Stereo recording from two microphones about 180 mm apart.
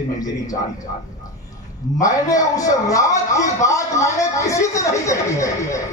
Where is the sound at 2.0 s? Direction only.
20° left (ahead or behind).